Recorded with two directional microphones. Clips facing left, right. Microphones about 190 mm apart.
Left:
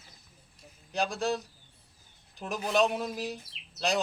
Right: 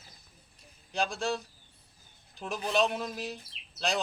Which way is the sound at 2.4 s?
5° left (ahead or behind).